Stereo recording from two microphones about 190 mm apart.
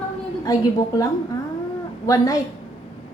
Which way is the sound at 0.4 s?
20° left (ahead or behind).